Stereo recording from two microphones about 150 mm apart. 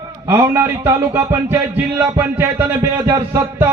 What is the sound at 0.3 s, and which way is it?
Speech, 20° right (ahead or behind).